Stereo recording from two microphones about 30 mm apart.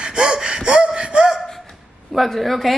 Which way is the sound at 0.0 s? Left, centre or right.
Right.